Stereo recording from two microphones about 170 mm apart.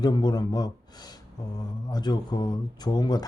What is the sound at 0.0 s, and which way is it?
Speech, 25° left (ahead or behind).